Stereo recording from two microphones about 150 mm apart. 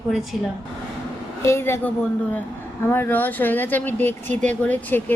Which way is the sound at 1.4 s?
15° left (ahead or behind).